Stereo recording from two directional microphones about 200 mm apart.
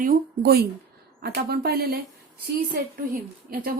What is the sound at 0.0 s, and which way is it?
A woman's voice, 50° right (ahead or behind).